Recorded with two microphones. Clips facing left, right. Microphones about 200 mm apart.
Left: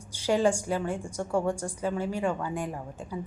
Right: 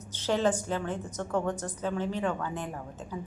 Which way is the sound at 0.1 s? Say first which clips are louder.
Left 2 dB; 10° left (ahead or behind).